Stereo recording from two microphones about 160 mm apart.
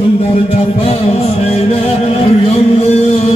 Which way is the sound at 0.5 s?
40° left (ahead or behind).